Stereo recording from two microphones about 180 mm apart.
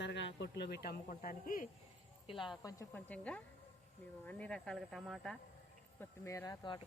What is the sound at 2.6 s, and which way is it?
Speech, 15° left (ahead or behind).